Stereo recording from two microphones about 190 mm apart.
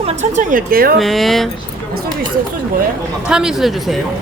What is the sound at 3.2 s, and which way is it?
Speech, 5° right (ahead or behind).